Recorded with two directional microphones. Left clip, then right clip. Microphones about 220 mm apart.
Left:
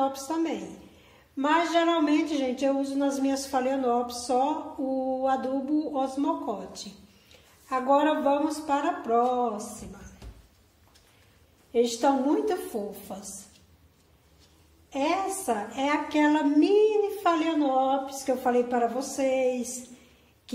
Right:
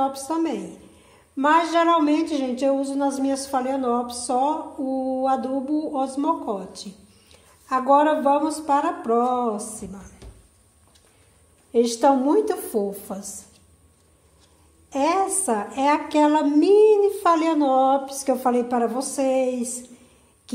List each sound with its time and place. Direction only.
0.0 s a woman's voice: 20° right (ahead or behind)
11.7 s a woman's voice: 30° right (ahead or behind)
14.9 s a woman's voice: 30° right (ahead or behind)